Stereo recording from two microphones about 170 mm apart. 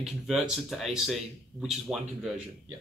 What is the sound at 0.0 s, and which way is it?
Speech, centre (ahead or behind).